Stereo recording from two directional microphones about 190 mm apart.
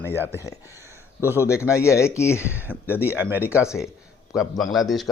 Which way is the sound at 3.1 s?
10° right (ahead or behind).